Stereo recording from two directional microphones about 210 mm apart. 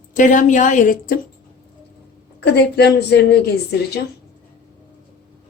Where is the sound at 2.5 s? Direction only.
50° left (ahead or behind).